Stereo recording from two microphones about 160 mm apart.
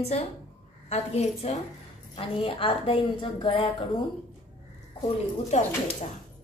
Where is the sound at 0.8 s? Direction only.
45° left (ahead or behind).